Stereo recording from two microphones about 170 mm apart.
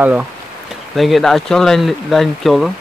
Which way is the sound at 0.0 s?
10° right (ahead or behind).